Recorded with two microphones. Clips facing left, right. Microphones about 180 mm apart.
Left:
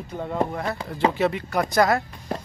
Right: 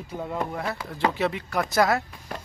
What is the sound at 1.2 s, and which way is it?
Speech, centre (ahead or behind).